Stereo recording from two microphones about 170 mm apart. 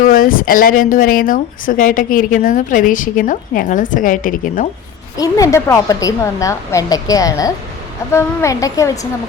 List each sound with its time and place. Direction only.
0.0 s speech: 55° left (ahead or behind)
5.1 s a woman's voice: 20° left (ahead or behind)